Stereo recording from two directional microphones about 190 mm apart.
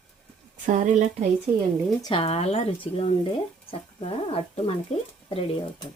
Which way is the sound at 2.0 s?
30° left (ahead or behind).